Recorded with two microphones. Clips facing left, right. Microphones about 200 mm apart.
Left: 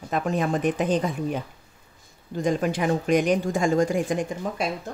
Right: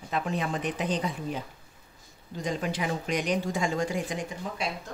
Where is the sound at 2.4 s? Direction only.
50° left (ahead or behind).